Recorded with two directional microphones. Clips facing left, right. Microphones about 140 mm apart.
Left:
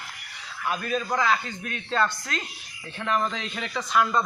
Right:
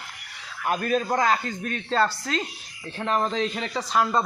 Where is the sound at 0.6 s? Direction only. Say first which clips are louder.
Right 4 dB; 45° right (ahead or behind).